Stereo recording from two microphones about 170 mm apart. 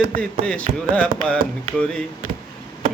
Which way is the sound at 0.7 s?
40° right (ahead or behind).